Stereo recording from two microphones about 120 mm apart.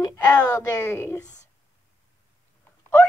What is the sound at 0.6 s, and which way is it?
Speech, 20° left (ahead or behind).